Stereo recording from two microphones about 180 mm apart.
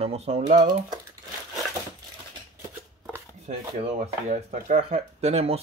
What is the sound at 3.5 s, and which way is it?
Speech, 40° right (ahead or behind).